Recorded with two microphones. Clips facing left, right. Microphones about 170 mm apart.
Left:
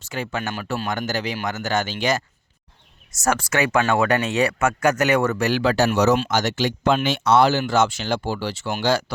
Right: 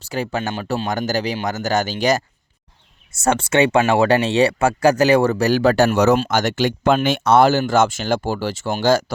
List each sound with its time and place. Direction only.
0.0 s speech: 35° right (ahead or behind)
3.2 s speech: 25° right (ahead or behind); by 9.1 s 45° right (ahead or behind)